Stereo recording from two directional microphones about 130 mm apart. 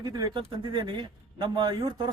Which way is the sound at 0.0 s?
30° right (ahead or behind).